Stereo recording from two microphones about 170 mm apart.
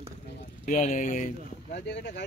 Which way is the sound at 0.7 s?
45° left (ahead or behind).